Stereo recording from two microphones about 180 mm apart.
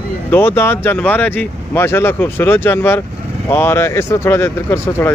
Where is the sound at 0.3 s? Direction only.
10° left (ahead or behind).